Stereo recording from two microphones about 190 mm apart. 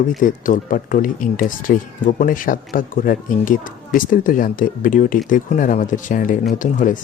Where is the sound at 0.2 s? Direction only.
45° left (ahead or behind).